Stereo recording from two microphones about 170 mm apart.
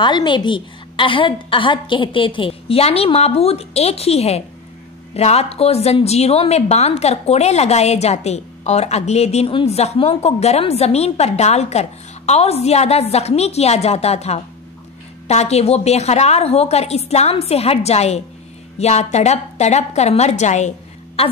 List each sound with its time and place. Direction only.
0.0 s a woman's voice: 25° left (ahead or behind)